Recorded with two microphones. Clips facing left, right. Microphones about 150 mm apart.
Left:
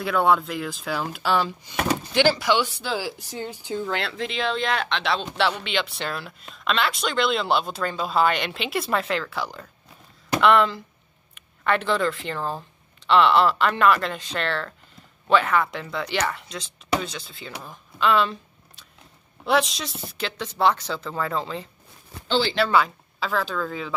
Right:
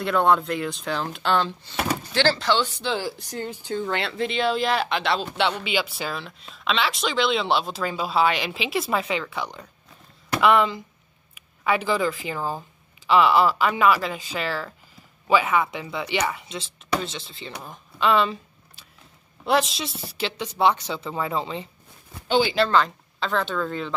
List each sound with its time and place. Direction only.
0.0 s speech: 5° left (ahead or behind)
17.6 s a sound: centre (ahead or behind)
19.4 s speech: centre (ahead or behind)
22.6 s speech: 5° left (ahead or behind)